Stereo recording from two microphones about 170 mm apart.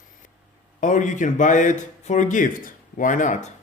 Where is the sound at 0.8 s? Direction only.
45° left (ahead or behind).